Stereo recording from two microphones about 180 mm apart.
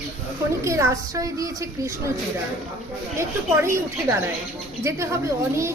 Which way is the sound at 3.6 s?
15° right (ahead or behind).